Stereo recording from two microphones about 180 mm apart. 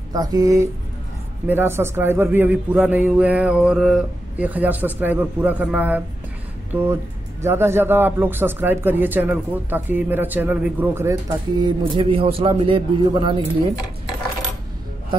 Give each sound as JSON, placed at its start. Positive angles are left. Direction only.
{"t": 0.1, "sound": "a man's voice", "side_deg": -20}
{"t": 12.0, "sound": "a man's voice", "side_deg": -30}